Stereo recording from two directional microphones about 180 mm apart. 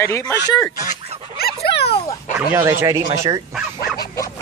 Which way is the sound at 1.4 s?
65° left (ahead or behind).